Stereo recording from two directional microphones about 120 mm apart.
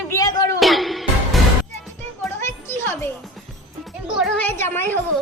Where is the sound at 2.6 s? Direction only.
20° left (ahead or behind).